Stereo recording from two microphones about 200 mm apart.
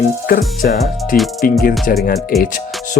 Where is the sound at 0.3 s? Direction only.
45° left (ahead or behind).